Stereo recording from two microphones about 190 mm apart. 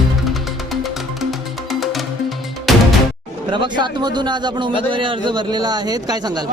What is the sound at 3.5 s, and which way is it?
A man's voice, 25° right (ahead or behind).